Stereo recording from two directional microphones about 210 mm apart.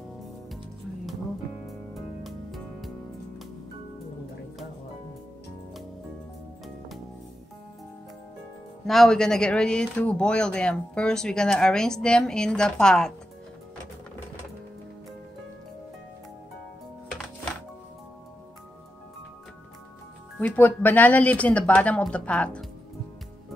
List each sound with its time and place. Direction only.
1.7 s music: centre (ahead or behind)
8.8 s speech: centre (ahead or behind)
20.3 s speech: 10° left (ahead or behind)